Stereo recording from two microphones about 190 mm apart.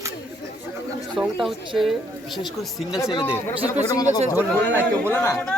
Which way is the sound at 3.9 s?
20° left (ahead or behind).